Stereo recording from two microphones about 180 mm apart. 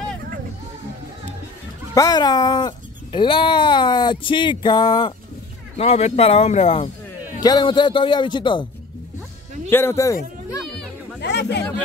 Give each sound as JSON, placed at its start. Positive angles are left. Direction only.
{"t": 2.0, "sound": "speech", "side_deg": 20}
{"t": 5.8, "sound": "speech", "side_deg": 35}
{"t": 9.7, "sound": "speech", "side_deg": 15}
{"t": 10.6, "sound": "music", "side_deg": 0}
{"t": 11.1, "sound": "a sound", "side_deg": 70}